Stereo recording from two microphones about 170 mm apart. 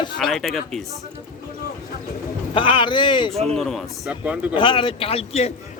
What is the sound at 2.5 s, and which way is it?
Speech, 30° left (ahead or behind).